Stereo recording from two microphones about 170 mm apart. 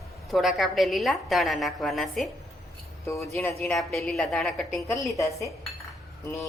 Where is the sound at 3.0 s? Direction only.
15° left (ahead or behind).